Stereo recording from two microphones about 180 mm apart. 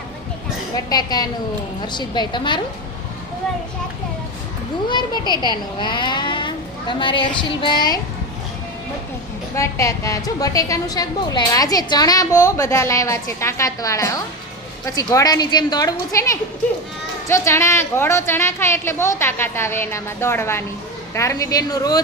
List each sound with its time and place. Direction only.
0.9 s a woman's voice: 20° left (ahead or behind)
4.9 s a woman's voice: 25° left (ahead or behind)
9.6 s a woman's voice: 15° left (ahead or behind)